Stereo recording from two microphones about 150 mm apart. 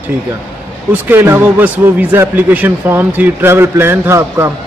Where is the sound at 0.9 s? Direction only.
15° right (ahead or behind).